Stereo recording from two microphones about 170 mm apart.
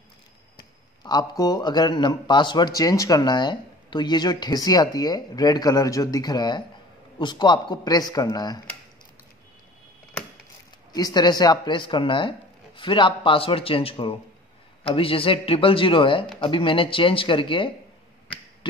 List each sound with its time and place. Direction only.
0.6 s speech: 25° left (ahead or behind)
10.9 s speech: 20° left (ahead or behind)